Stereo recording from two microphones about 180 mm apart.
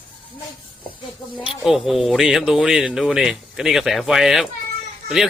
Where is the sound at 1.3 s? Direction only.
25° left (ahead or behind).